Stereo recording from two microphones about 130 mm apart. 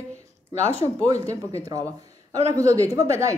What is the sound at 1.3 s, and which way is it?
A woman's voice, 25° right (ahead or behind).